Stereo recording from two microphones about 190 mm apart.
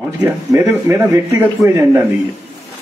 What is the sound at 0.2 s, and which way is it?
A man's voice, 15° right (ahead or behind).